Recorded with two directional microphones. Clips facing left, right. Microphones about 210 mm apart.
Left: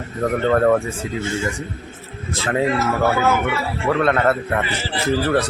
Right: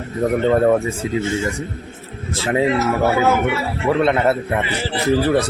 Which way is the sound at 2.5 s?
20° right (ahead or behind).